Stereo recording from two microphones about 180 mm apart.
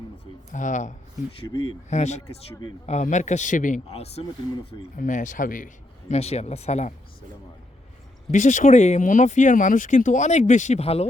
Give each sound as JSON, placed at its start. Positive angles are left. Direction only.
{"t": 0.5, "sound": "speech", "side_deg": 45}
{"t": 1.4, "sound": "speech", "side_deg": 25}
{"t": 1.9, "sound": "speech", "side_deg": 40}
{"t": 3.8, "sound": "speech", "side_deg": 35}
{"t": 4.9, "sound": "speech", "side_deg": 45}
{"t": 8.3, "sound": "speech", "side_deg": 45}